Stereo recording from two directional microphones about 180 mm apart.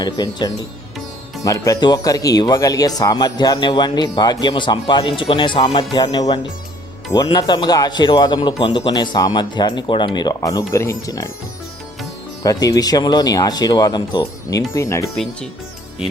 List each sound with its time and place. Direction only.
0.0 s speech: 25° left (ahead or behind)
12.4 s speech: 20° left (ahead or behind)
15.1 s speech: 5° left (ahead or behind)